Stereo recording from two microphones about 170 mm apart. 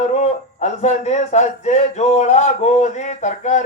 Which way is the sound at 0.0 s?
40° left (ahead or behind).